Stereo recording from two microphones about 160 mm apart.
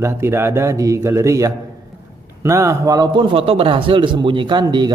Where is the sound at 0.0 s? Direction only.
15° right (ahead or behind).